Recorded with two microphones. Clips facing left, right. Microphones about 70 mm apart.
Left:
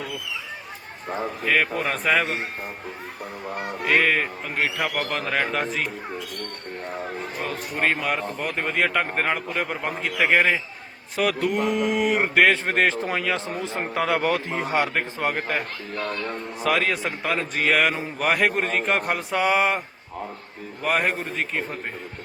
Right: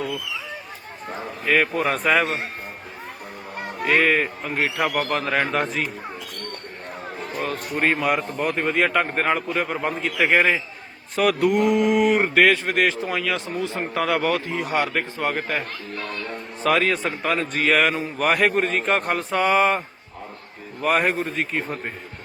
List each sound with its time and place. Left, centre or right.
1.5 s a man's voice: centre
3.8 s a man's voice: centre
7.4 s a man's voice: centre
12.3 s a man's voice: left
16.6 s a man's voice: centre
20.8 s a man's voice: centre